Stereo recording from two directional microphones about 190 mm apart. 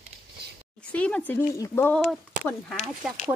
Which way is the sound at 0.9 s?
5° left (ahead or behind).